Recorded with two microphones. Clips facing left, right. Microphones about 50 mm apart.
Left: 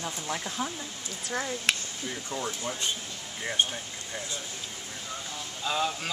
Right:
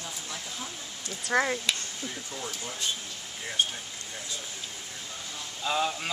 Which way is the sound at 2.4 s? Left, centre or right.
Left.